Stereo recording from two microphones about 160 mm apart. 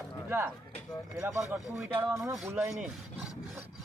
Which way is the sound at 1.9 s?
15° right (ahead or behind).